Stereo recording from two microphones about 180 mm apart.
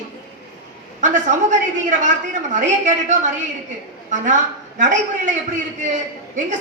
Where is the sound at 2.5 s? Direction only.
45° right (ahead or behind).